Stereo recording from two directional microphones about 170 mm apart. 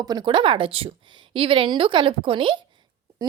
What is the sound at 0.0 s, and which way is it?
Speech, 25° right (ahead or behind).